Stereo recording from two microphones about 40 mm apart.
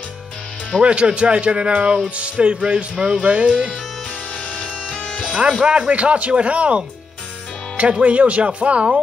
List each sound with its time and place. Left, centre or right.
0.8 s speech: right
2.6 s speech: centre
5.2 s speech: right
7.9 s speech: right